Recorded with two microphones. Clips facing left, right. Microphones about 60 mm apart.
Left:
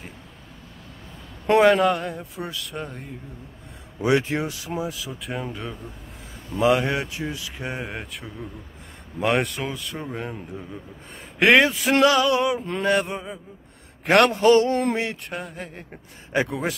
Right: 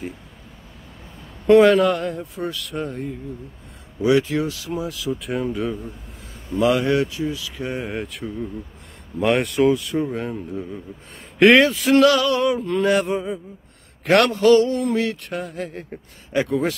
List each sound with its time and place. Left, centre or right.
1.6 s a man's voice: centre
4.0 s speech: left
5.0 s a man's voice: centre
6.5 s speech: left
7.7 s a man's voice: centre
11.3 s male singing: centre
12.8 s a man's voice: centre
14.0 s male singing: centre
14.3 s speech: left
14.7 s a sound: left
15.2 s a man's voice: centre
16.4 s male singing: centre